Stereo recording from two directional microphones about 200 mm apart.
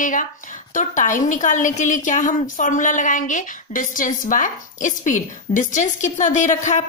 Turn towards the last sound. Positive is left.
turn(degrees=35)  # may be behind; listen again after turning